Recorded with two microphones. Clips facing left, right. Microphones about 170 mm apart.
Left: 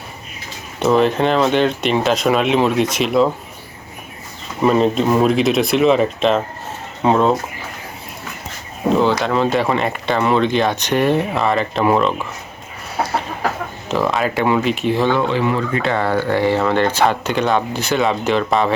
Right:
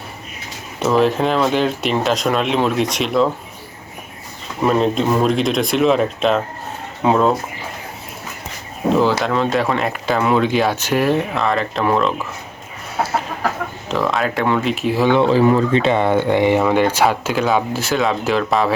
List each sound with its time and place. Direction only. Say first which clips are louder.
0.8 s speech: left 1 dB; centre (ahead or behind)
4.6 s speech: left 2 dB; centre (ahead or behind)
9.0 s speech: even; centre (ahead or behind)
13.0 s chicken: even; centre (ahead or behind)
13.8 s speech: left 1 dB; centre (ahead or behind)
15.3 s speech: right 5 dB; 40° right (ahead or behind)
15.7 s speech: right 3 dB; 20° right (ahead or behind); by 18.7 s centre (ahead or behind)